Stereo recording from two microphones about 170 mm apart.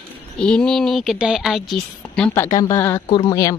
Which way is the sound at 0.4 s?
5° left (ahead or behind).